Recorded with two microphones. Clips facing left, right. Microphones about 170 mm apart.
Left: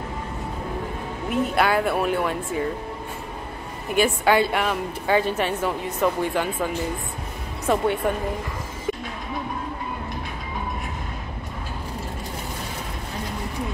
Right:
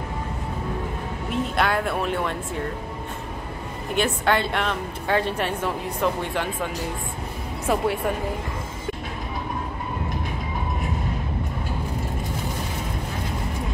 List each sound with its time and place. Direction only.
1.3 s speech: 5° left (ahead or behind)
3.9 s speech: 5° left (ahead or behind)